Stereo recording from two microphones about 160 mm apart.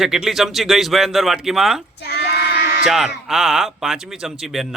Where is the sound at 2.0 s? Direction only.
85° left.